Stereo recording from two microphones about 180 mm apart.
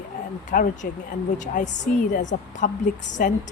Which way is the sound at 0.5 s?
50° left (ahead or behind).